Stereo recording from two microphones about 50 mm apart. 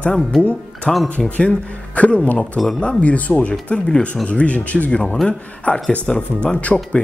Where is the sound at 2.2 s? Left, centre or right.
Left.